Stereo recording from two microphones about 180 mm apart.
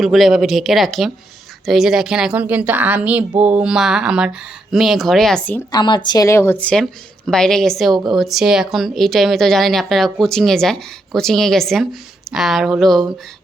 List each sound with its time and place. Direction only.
0.0 s a woman's voice: centre (ahead or behind)
5.7 s a woman's voice: 25° left (ahead or behind); by 13.0 s centre (ahead or behind)